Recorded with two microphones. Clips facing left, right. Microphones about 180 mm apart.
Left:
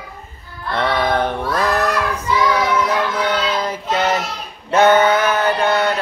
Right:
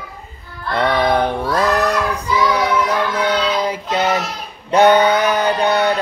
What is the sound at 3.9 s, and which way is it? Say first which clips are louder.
Child singing: left 1 dB; 15° right (ahead or behind).